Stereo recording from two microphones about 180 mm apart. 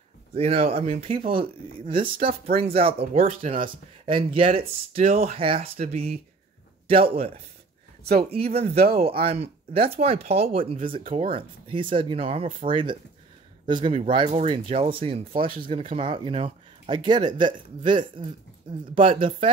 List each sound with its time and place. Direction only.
0.3 s speech: 35° right (ahead or behind)
2.1 s speech: 50° right (ahead or behind)
2.5 s speech: 35° right (ahead or behind)
8.0 s speech: 60° right (ahead or behind)
8.3 s speech: 35° right (ahead or behind)
14.0 s speech: 30° right (ahead or behind)